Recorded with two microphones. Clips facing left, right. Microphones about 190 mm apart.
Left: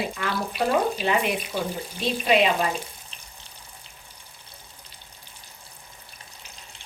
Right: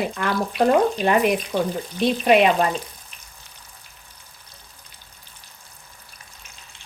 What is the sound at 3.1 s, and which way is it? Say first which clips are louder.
Water: left 1 dB; 30° left (ahead or behind).